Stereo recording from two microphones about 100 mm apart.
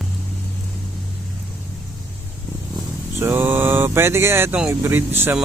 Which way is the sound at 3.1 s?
20° right (ahead or behind).